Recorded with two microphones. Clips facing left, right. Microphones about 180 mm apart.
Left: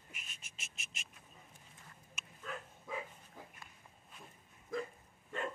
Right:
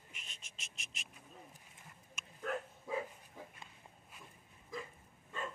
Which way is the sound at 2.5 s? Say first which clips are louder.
Right 7 dB; 60° right (ahead or behind).